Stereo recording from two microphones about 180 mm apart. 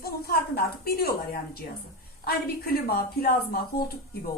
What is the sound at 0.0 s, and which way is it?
A woman's voice, 55° left (ahead or behind).